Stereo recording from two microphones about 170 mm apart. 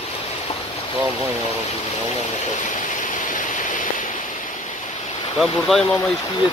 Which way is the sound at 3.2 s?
50° left (ahead or behind).